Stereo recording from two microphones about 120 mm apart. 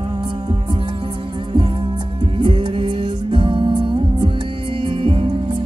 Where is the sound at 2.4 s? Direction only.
40° right (ahead or behind).